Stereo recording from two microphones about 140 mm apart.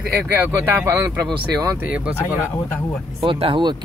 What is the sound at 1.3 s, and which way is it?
Speech, 30° right (ahead or behind).